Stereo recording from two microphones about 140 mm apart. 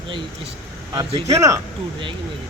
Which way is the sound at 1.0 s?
40° right (ahead or behind).